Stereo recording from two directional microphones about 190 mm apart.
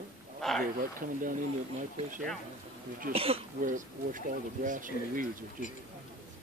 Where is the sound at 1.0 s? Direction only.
40° right (ahead or behind).